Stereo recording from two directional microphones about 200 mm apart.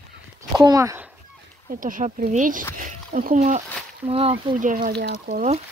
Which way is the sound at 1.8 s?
40° right (ahead or behind).